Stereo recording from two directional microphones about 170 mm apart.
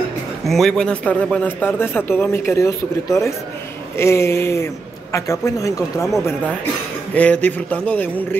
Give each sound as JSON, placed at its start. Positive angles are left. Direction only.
{"t": 0.5, "sound": "a man's voice", "side_deg": 0}
{"t": 7.2, "sound": "a man's voice", "side_deg": 10}